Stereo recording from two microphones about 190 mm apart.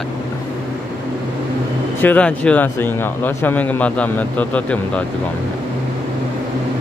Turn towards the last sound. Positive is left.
turn(degrees=5)  # may be behind; listen again after turning